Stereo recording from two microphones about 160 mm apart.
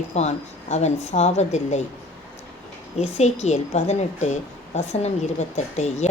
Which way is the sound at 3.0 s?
45° left (ahead or behind).